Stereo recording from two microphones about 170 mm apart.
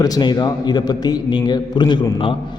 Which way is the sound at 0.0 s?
25° left (ahead or behind).